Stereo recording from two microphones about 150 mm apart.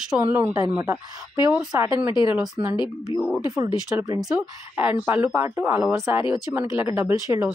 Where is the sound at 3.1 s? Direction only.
30° left (ahead or behind).